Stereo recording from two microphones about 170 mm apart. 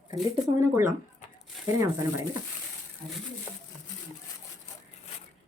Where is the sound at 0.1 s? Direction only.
20° right (ahead or behind).